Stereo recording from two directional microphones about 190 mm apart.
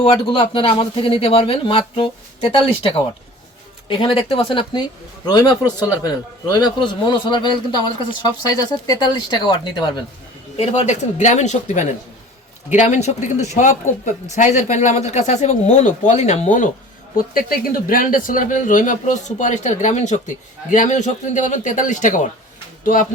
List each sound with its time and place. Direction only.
0.0 s speech: 30° left (ahead or behind)
8.9 s speech: 20° left (ahead or behind)
10.6 s speech: 35° left (ahead or behind)